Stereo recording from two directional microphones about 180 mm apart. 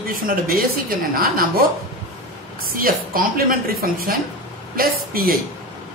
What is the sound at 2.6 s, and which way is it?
A woman's voice, 55° right (ahead or behind).